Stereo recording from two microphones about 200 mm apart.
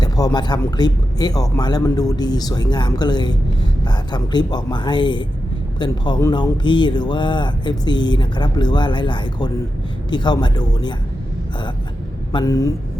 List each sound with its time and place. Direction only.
0.0 s speech: 20° left (ahead or behind)
12.3 s speech: 20° left (ahead or behind)